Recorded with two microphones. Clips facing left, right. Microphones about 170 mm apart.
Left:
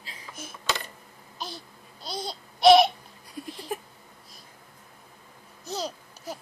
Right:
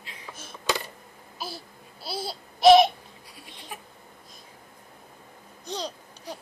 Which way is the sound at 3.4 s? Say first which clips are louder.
Left 14 dB; 45° left (ahead or behind).